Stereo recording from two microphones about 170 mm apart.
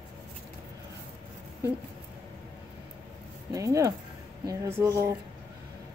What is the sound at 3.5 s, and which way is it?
A woman's voice, 20° right (ahead or behind).